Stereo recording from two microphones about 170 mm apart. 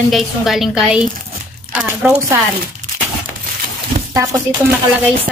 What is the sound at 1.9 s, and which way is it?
Speech, 15° right (ahead or behind).